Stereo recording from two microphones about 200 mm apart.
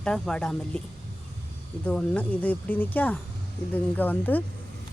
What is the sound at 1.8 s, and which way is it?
Speech, 5° left (ahead or behind).